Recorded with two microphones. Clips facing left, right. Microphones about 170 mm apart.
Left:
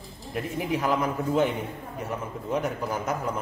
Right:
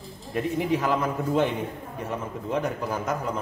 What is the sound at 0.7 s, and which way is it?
Speech, 10° left (ahead or behind).